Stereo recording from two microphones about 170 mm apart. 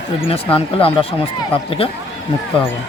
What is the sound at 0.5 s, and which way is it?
Speech, 35° left (ahead or behind).